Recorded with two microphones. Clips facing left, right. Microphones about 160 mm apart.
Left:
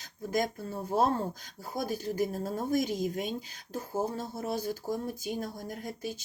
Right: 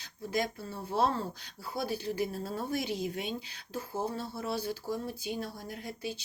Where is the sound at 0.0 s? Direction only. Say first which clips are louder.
Left 2 dB; 45° left (ahead or behind).